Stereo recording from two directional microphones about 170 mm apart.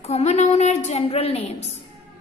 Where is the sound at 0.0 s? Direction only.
40° left (ahead or behind).